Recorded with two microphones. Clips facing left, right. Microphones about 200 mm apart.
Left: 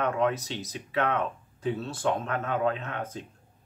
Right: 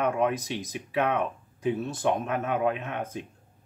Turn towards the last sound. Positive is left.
turn(degrees=-15)  # may be behind; listen again after turning